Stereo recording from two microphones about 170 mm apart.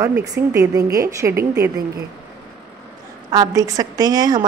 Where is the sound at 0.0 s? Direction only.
20° right (ahead or behind).